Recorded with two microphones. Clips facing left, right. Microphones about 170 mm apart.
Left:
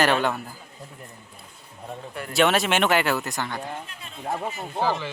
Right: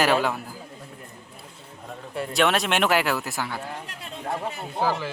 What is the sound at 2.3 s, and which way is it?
Speech, centre (ahead or behind).